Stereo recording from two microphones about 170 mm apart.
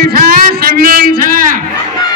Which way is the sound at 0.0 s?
55° right (ahead or behind).